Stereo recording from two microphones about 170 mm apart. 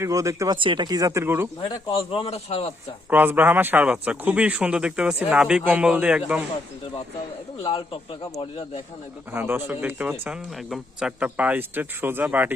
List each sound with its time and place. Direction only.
0.0 s speech: 20° right (ahead or behind)
1.6 s a man's voice: 30° left (ahead or behind)
3.1 s a man's voice: 10° right (ahead or behind)
7.6 s a man's voice: 30° left (ahead or behind)
9.3 s a man's voice: 10° right (ahead or behind)